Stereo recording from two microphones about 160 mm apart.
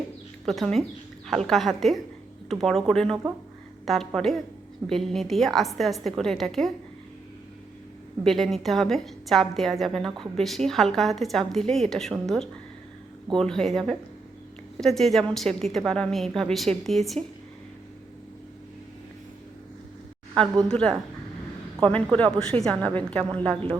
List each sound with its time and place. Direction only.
0.4 s a woman's voice: centre (ahead or behind)
8.2 s a woman's voice: centre (ahead or behind)
20.7 s a woman's voice: 5° left (ahead or behind)
21.9 s a woman's voice: 5° left (ahead or behind)